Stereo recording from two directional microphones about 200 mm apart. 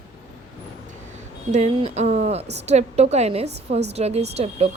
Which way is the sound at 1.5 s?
35° right (ahead or behind).